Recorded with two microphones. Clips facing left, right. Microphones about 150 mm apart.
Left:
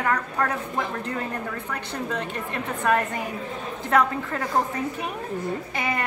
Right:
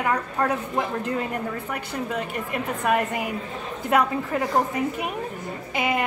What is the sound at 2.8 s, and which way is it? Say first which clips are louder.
A woman's voice: even; 10° right (ahead or behind).